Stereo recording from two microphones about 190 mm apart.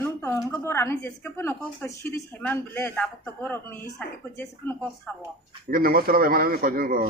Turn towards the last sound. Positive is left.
turn(degrees=-50)  # may be behind; listen again after turning